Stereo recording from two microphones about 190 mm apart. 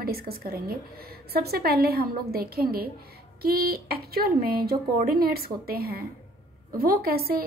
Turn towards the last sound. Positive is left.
turn(degrees=-55)  # may be behind; listen again after turning